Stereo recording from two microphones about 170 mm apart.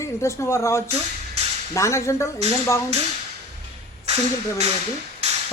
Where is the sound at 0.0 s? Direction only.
15° left (ahead or behind).